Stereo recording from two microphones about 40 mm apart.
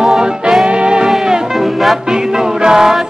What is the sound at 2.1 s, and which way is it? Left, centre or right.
Music, centre.